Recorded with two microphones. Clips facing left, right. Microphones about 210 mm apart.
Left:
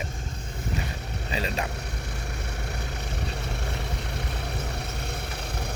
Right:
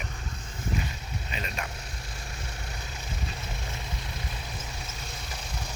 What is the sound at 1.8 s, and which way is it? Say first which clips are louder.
Vehicle: left 6 dB; 65° left (ahead or behind).